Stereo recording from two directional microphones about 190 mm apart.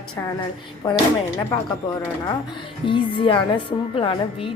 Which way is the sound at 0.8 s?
20° left (ahead or behind).